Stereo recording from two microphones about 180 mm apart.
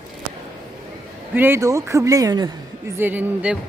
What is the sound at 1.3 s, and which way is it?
Speech, 10° right (ahead or behind).